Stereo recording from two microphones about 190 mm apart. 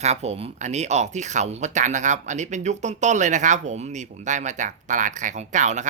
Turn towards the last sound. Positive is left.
turn(degrees=-40)  # may be behind; listen again after turning